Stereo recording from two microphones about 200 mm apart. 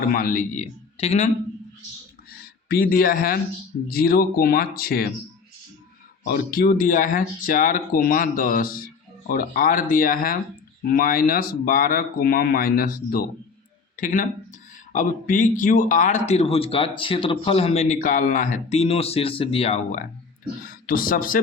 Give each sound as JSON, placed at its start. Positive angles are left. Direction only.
{"t": 0.1, "sound": "speech", "side_deg": 45}
{"t": 2.6, "sound": "speech", "side_deg": 45}
{"t": 6.2, "sound": "speech", "side_deg": 50}
{"t": 20.8, "sound": "speech", "side_deg": 45}